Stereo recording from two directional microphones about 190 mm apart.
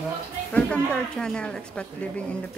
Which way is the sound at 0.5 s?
5° left (ahead or behind).